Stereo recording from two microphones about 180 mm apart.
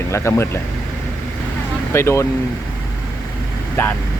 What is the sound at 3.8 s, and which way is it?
Speech, 15° left (ahead or behind).